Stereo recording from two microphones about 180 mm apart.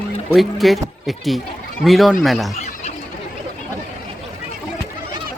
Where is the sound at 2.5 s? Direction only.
40° left (ahead or behind).